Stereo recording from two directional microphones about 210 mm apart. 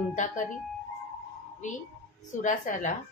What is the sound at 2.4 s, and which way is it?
Speech, 35° left (ahead or behind).